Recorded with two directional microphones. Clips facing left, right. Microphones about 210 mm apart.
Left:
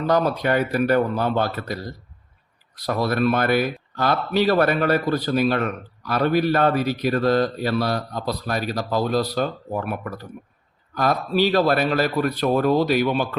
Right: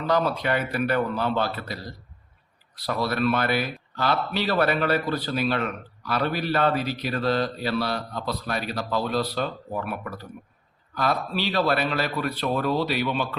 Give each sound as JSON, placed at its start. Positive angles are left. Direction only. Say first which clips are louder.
{"t": 0.0, "sound": "speech", "louder": "left 4 dB", "side_deg": 45}
{"t": 2.8, "sound": "speech", "louder": "left 4 dB", "side_deg": 45}